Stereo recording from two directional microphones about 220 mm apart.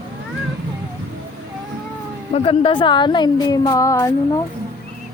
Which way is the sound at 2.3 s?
25° left (ahead or behind).